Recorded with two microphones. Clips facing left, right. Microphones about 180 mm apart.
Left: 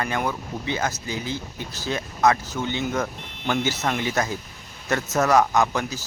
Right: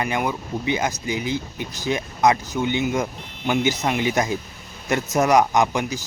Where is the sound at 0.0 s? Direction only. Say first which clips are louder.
Right 2 dB; 15° right (ahead or behind).